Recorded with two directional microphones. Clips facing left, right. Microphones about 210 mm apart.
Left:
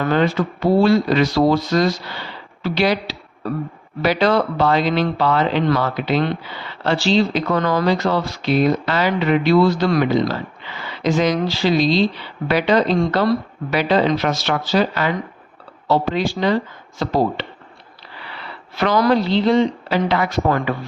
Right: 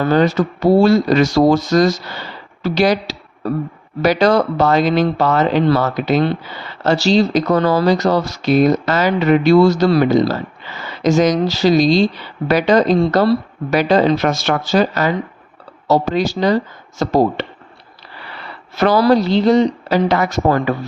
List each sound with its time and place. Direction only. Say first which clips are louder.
0.0 s speech: right 4 dB; 40° right (ahead or behind)